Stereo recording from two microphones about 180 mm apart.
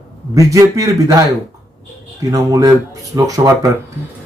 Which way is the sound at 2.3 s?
20° right (ahead or behind).